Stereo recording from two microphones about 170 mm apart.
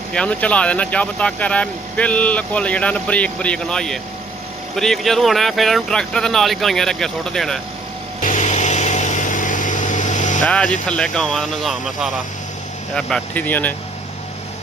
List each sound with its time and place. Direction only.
0.1 s speech: 5° left (ahead or behind)
8.2 s vehicle: 45° left (ahead or behind)
10.4 s speech: 5° left (ahead or behind)